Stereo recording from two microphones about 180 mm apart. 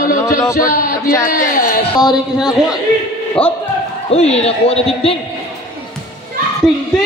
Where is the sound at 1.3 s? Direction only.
50° left (ahead or behind).